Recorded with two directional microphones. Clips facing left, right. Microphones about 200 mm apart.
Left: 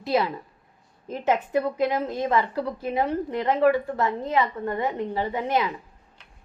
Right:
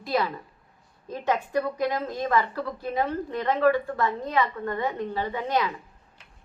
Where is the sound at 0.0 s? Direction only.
20° left (ahead or behind).